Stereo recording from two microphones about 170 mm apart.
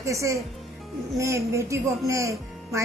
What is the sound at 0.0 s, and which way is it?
Speech, 15° right (ahead or behind).